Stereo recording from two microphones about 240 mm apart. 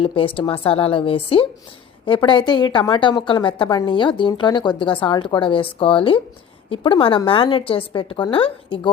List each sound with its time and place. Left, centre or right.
0.0 s a woman's voice: left